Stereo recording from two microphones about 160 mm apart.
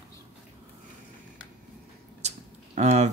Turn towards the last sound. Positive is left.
turn(degrees=-45)  # may be behind; listen again after turning